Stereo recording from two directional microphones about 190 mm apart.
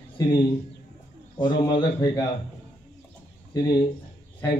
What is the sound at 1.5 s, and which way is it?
Speech, 25° left (ahead or behind).